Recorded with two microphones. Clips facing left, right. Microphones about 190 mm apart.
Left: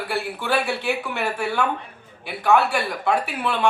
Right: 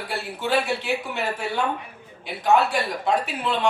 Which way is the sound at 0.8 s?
65° left (ahead or behind).